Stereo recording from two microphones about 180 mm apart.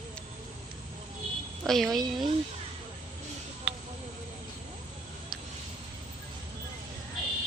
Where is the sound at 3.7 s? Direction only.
5° right (ahead or behind).